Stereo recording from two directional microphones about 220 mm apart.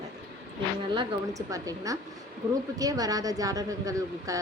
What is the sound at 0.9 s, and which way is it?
Speech, 15° right (ahead or behind).